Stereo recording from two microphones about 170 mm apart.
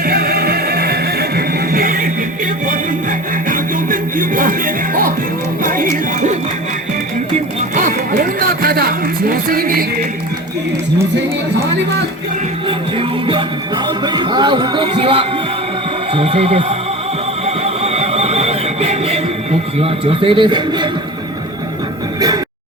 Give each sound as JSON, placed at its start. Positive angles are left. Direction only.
{"t": 0.0, "sound": "music", "side_deg": -65}
{"t": 3.5, "sound": "music", "side_deg": -55}
{"t": 7.3, "sound": "a sound", "side_deg": -50}
{"t": 12.6, "sound": "music", "side_deg": -30}
{"t": 13.8, "sound": "speech", "side_deg": -25}
{"t": 17.4, "sound": "music", "side_deg": -40}